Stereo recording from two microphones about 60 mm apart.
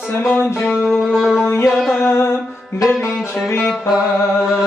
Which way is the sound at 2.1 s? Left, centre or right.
Left.